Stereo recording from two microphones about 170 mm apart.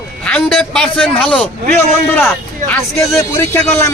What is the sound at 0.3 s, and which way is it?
A man's voice, 5° left (ahead or behind).